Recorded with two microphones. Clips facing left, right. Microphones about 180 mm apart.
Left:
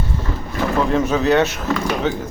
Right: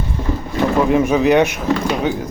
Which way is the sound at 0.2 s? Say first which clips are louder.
Right 5 dB; 15° right (ahead or behind).